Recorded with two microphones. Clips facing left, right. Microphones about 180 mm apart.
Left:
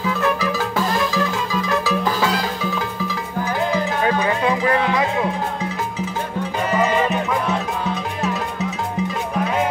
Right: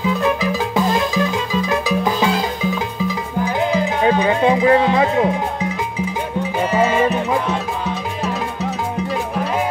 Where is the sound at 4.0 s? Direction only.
20° right (ahead or behind).